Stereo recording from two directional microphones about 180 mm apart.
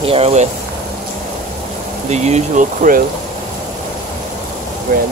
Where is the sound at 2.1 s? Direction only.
40° right (ahead or behind).